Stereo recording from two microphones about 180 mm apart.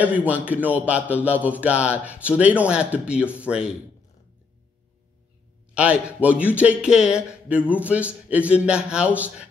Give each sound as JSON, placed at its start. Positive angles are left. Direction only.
{"t": 0.0, "sound": "a man's voice", "side_deg": -10}
{"t": 5.8, "sound": "a man's voice", "side_deg": -5}